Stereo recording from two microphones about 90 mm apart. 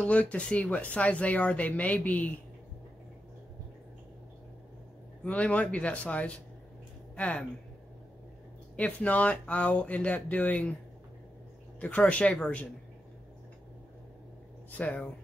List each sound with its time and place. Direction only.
0.0 s speech: 15° left (ahead or behind)
5.2 s speech: 15° left (ahead or behind)
8.7 s speech: 15° left (ahead or behind)
11.8 s speech: 15° left (ahead or behind)
14.7 s speech: 15° left (ahead or behind)